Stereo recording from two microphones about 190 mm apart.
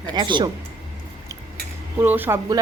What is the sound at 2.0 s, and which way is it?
Speech, 10° right (ahead or behind).